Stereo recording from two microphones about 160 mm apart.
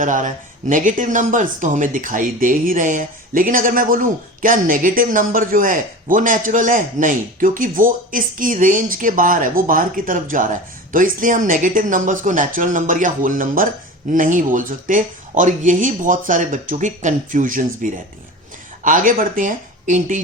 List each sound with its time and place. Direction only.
0.0 s speech: 50° right (ahead or behind)